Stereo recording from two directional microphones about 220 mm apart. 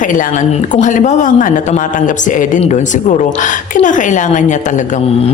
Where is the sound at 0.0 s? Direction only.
35° left (ahead or behind).